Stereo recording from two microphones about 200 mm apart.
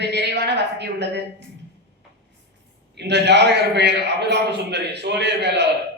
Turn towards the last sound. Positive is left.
turn(degrees=-60)  # may be behind; listen again after turning